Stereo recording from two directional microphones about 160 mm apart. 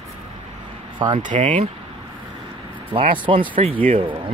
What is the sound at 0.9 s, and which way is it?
Speech, 30° right (ahead or behind).